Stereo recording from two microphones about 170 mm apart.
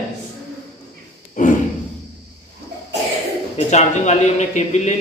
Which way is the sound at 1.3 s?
50° left (ahead or behind).